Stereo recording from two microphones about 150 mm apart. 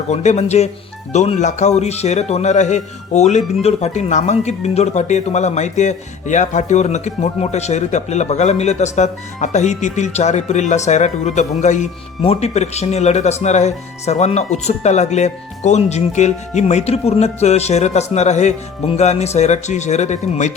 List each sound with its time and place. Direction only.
0.1 s a man's voice: 50° left (ahead or behind)